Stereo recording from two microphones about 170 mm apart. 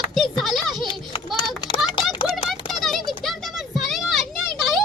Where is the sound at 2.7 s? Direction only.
Centre (ahead or behind).